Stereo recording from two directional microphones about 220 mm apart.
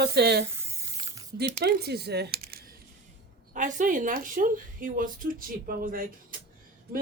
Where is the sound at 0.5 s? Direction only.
15° right (ahead or behind).